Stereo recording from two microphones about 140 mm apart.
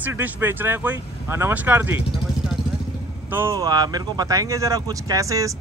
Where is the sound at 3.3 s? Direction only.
15° right (ahead or behind).